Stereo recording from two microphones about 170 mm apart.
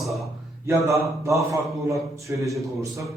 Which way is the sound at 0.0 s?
Centre (ahead or behind).